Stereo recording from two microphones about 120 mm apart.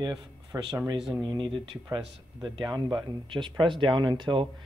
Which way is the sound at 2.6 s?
40° right (ahead or behind).